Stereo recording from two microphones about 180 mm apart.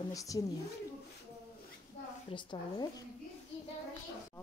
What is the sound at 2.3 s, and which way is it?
Speech, 25° left (ahead or behind).